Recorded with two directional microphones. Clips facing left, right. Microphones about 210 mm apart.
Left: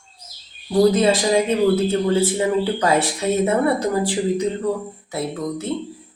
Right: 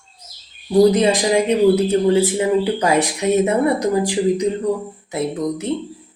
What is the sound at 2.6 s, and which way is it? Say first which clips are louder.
Speech: right 2 dB; 15° right (ahead or behind).